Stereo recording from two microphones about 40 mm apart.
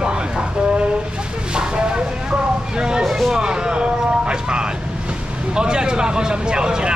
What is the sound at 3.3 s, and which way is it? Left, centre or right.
Speech, centre.